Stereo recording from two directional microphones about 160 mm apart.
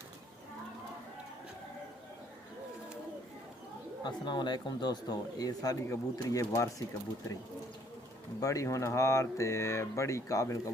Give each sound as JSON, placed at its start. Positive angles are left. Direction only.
{"t": 4.0, "sound": "speech", "side_deg": 25}
{"t": 8.4, "sound": "speech", "side_deg": 20}